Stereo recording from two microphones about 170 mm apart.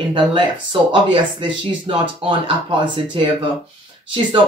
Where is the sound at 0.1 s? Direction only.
30° right (ahead or behind).